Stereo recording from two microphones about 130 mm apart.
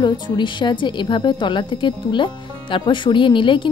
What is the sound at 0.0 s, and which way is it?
A woman's voice, 35° left (ahead or behind).